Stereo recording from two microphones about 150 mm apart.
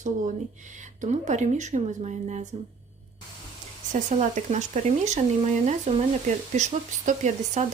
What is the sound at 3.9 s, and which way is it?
Speech, 50° right (ahead or behind).